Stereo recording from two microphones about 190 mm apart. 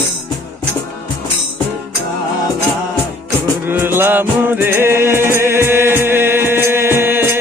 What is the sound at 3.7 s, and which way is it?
Music, 10° right (ahead or behind).